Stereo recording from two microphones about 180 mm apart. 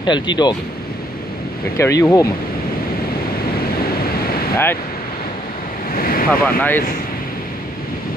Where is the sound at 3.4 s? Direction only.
55° left (ahead or behind).